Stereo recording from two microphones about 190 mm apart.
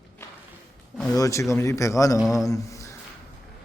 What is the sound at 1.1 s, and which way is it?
Speech, 15° left (ahead or behind).